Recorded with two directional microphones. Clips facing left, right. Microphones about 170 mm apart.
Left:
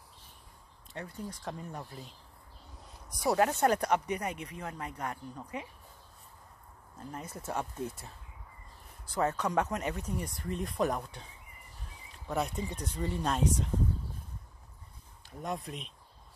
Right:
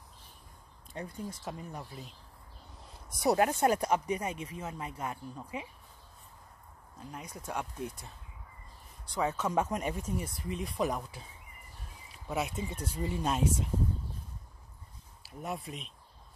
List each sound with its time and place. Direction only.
0.9 s speech: 10° right (ahead or behind)
3.2 s speech: 20° right (ahead or behind)
4.1 s speech: 25° right (ahead or behind)
5.0 s speech: 10° right (ahead or behind)
7.0 s speech: 10° right (ahead or behind)
7.2 s speech: 5° left (ahead or behind)
9.0 s speech: 5° left (ahead or behind)
9.4 s speech: 10° right (ahead or behind)
12.1 s a sound: 5° right (ahead or behind)
12.6 s speech: 10° right (ahead or behind)
15.2 s speech: 5° right (ahead or behind)